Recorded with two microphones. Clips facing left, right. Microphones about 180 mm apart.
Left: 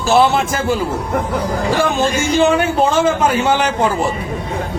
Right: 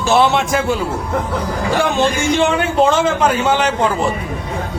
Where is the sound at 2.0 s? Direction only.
5° left (ahead or behind).